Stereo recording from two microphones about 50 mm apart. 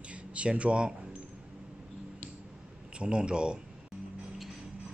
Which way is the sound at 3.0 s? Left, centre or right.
Centre.